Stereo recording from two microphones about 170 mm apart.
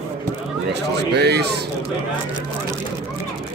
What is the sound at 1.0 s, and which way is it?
Speech, 80° right.